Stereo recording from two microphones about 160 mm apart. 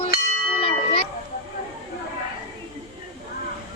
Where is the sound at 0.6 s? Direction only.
35° left (ahead or behind).